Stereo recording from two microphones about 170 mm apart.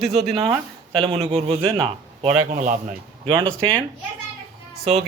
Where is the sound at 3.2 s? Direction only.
30° right (ahead or behind).